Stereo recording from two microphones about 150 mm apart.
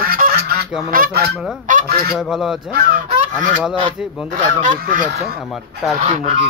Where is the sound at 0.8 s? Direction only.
70° right (ahead or behind).